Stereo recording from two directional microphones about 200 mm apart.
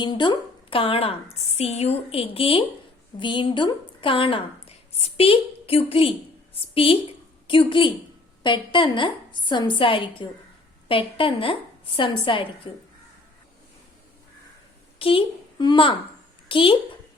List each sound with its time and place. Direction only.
0.0 s a woman's voice: 20° left (ahead or behind)
14.9 s a woman's voice: 25° left (ahead or behind)